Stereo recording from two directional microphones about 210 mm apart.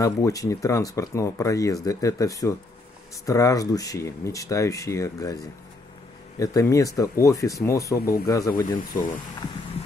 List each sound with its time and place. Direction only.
0.0 s speech: 15° left (ahead or behind)
6.4 s speech: 15° left (ahead or behind)
7.9 s speech: 45° left (ahead or behind)
8.3 s speech: 15° left (ahead or behind)